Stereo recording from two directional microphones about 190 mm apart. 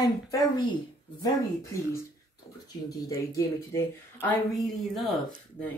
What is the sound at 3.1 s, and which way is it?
Speech, 15° left (ahead or behind).